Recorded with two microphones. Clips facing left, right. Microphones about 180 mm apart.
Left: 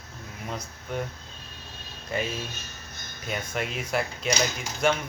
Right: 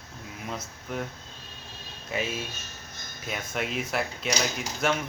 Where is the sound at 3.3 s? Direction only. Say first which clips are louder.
Left 1 dB; centre (ahead or behind).